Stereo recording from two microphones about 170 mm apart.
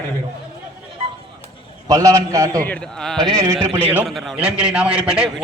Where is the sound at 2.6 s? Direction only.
5° left (ahead or behind).